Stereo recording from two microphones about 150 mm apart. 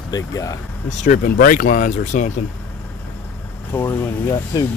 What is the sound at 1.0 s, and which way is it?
Speech, 65° left (ahead or behind).